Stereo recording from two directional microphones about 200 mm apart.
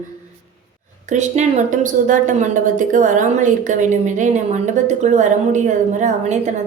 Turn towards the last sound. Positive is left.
turn(degrees=-35)  # may be behind; listen again after turning